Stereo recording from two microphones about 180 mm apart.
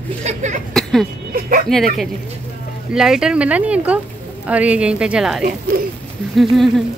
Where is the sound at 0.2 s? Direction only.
40° right (ahead or behind).